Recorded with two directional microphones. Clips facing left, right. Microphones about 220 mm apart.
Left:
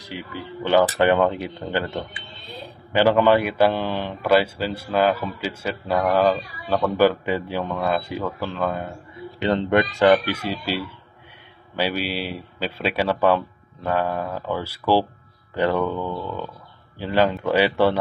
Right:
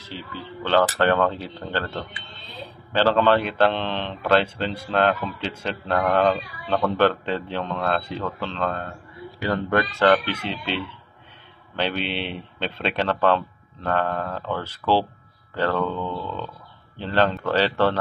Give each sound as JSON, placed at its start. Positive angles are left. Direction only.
{"t": 0.0, "sound": "speech", "side_deg": 15}